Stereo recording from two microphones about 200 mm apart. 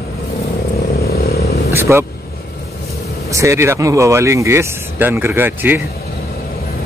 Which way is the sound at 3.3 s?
15° right (ahead or behind).